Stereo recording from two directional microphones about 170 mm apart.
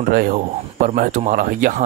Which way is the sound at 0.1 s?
55° right (ahead or behind).